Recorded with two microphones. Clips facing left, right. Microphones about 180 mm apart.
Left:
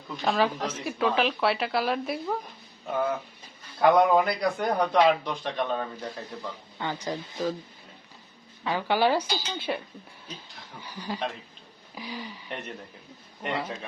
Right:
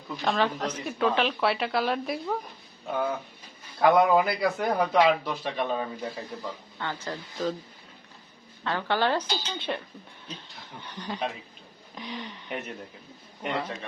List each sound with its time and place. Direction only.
0.1 s a man's voice: centre (ahead or behind)
6.7 s speech: 15° left (ahead or behind)
8.6 s a man's voice: 10° left (ahead or behind)